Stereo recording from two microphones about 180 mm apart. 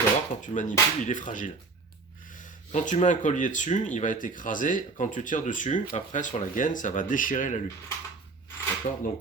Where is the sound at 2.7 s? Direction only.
45° left (ahead or behind).